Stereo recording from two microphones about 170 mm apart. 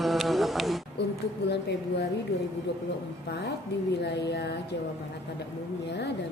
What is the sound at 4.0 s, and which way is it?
Speech, 80° left.